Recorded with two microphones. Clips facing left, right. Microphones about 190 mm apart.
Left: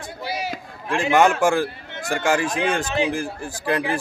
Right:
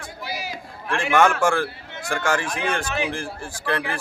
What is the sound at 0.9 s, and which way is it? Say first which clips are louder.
A man's voice: left 2 dB; 20° left (ahead or behind).